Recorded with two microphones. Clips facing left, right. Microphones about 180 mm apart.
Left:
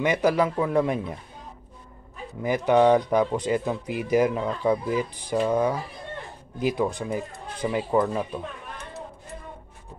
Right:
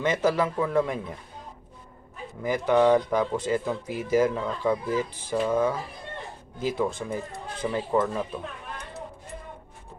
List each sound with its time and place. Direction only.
0.0 s speech: 15° left (ahead or behind)
2.4 s speech: 20° left (ahead or behind)